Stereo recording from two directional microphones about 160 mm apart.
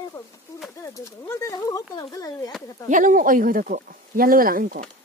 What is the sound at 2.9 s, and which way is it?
Speech, 55° right (ahead or behind).